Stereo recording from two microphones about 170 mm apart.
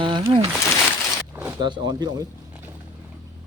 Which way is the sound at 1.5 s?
25° right (ahead or behind).